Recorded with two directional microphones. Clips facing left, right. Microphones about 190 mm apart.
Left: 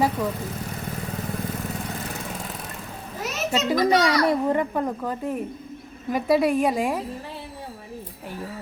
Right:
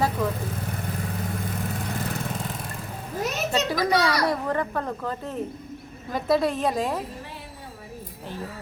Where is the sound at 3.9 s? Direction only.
20° left (ahead or behind).